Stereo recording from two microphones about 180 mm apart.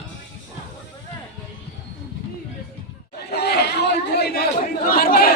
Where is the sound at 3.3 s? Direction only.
65° left (ahead or behind).